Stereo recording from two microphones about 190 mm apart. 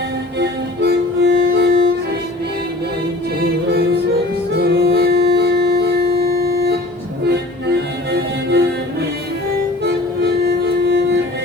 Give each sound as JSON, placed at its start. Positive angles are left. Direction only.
{"t": 0.3, "sound": "music", "side_deg": -60}
{"t": 3.4, "sound": "music", "side_deg": -55}
{"t": 9.8, "sound": "music", "side_deg": -60}